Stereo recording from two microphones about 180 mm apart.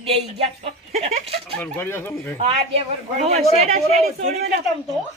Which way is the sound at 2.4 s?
35° right (ahead or behind).